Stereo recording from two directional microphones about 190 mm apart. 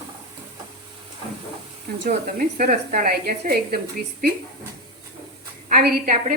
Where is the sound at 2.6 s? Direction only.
45° right (ahead or behind).